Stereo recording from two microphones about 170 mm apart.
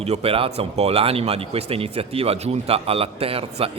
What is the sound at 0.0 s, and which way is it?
Speech, 35° right (ahead or behind).